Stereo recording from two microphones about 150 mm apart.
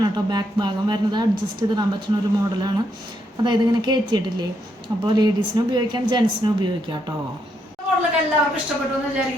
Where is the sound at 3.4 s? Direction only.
30° right (ahead or behind).